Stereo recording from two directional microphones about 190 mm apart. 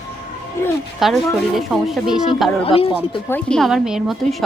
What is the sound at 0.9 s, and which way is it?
A woman's voice, centre (ahead or behind).